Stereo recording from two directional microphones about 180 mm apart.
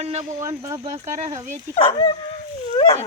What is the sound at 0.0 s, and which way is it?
Speech, 35° right (ahead or behind).